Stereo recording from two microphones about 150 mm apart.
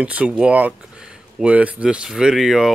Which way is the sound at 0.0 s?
10° right (ahead or behind).